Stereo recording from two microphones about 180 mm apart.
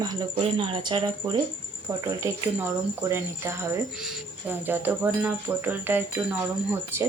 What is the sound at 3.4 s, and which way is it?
Speech, 15° right (ahead or behind).